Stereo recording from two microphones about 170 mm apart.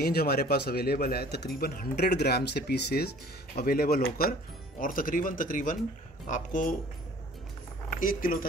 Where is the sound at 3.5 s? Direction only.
60° left (ahead or behind).